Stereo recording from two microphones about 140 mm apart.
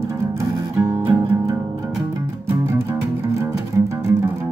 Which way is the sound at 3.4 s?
20° right (ahead or behind).